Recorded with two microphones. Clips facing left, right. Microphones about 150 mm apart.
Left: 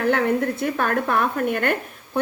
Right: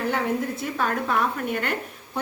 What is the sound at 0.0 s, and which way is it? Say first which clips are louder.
A woman's voice: left 5 dB; 60° left (ahead or behind).